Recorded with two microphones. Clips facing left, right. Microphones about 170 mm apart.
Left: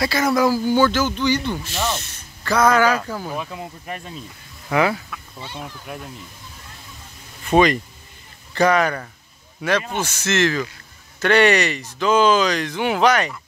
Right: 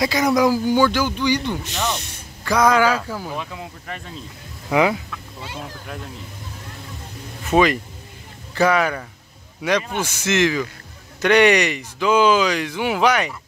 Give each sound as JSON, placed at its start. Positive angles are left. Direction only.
{"t": 0.0, "sound": "speech", "side_deg": -15}
{"t": 3.5, "sound": "speech", "side_deg": 15}
{"t": 4.6, "sound": "speech", "side_deg": -15}
{"t": 7.4, "sound": "speech", "side_deg": -5}